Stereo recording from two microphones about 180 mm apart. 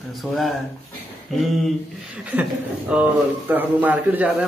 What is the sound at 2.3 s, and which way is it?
Speech, 10° right (ahead or behind).